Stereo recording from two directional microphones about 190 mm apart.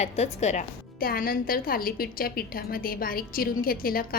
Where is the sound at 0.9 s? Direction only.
50° left (ahead or behind).